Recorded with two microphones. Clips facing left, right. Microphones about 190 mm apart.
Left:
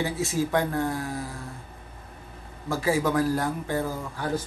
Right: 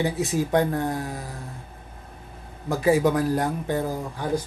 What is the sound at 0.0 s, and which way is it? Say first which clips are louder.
Speech: right 2 dB; 15° right (ahead or behind).